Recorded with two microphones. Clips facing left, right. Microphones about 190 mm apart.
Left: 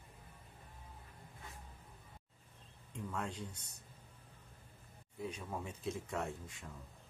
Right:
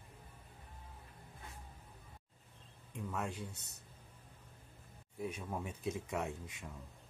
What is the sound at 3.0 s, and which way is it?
Speech, 10° right (ahead or behind).